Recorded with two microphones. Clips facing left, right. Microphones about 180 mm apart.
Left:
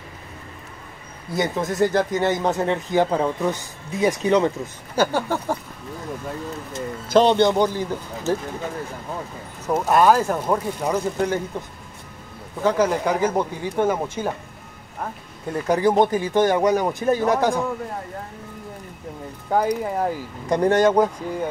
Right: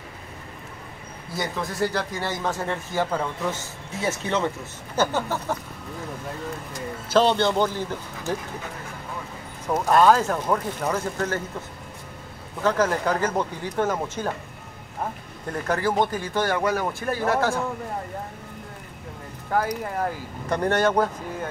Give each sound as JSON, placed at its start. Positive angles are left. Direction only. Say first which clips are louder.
{"t": 1.3, "sound": "speech", "louder": "left 6 dB", "side_deg": 20}
{"t": 7.2, "sound": "speech", "louder": "left 4 dB", "side_deg": 15}
{"t": 9.7, "sound": "speech", "louder": "left 1 dB", "side_deg": 10}
{"t": 12.6, "sound": "speech", "louder": "left 2 dB", "side_deg": 10}
{"t": 15.5, "sound": "speech", "louder": "left 5 dB", "side_deg": 10}
{"t": 19.5, "sound": "speech", "louder": "left 4 dB", "side_deg": 15}